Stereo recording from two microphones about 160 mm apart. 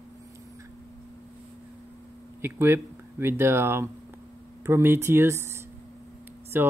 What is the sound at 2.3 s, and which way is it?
Speech, 15° right (ahead or behind).